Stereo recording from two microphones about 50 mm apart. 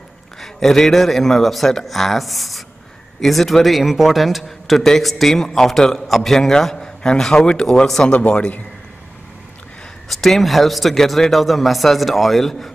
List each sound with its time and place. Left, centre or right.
0.4 s a man's voice: centre
8.1 s a man's voice: left
10.0 s speech: centre